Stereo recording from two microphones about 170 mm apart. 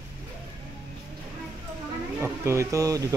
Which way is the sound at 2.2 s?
15° right (ahead or behind).